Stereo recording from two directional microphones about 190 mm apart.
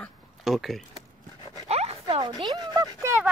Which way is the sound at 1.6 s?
35° right (ahead or behind).